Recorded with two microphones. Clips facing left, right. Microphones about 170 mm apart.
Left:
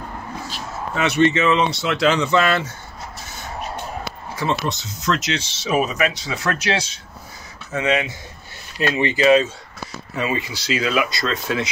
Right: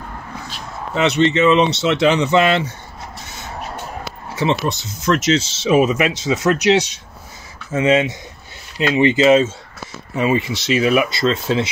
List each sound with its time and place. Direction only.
0.9 s speech: 20° right (ahead or behind)
4.4 s speech: 25° right (ahead or behind)
7.7 s speech: 25° right (ahead or behind)